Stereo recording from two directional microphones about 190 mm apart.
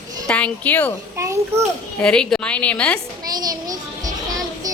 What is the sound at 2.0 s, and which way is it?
Speech, 5° left (ahead or behind).